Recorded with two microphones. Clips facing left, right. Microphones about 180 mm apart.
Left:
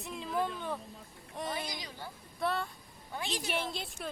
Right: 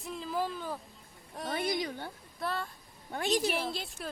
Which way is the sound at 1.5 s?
55° right (ahead or behind).